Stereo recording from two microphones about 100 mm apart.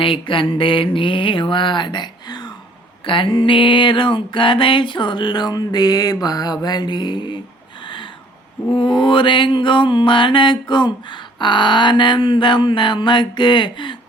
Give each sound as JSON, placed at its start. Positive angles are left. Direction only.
{"t": 0.0, "sound": "mantra", "side_deg": 60}
{"t": 3.1, "sound": "mantra", "side_deg": 60}
{"t": 7.9, "sound": "a sound", "side_deg": 55}
{"t": 8.7, "sound": "mantra", "side_deg": 60}